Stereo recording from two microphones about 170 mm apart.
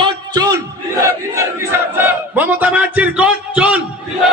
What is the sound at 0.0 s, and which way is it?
Music, 25° right (ahead or behind).